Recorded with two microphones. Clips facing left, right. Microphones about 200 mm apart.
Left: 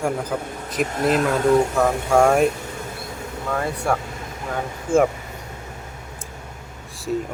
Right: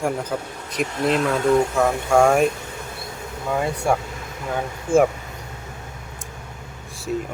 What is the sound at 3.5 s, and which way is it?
Speech, 10° right (ahead or behind).